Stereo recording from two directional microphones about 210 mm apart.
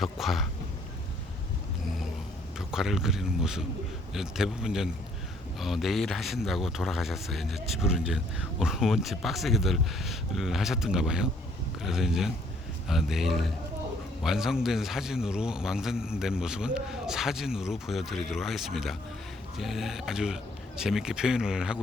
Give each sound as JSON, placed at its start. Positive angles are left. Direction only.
{"t": 0.0, "sound": "speech", "side_deg": 0}
{"t": 2.6, "sound": "speech", "side_deg": 0}